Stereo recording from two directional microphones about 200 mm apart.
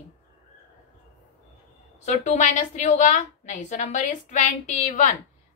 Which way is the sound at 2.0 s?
35° left (ahead or behind).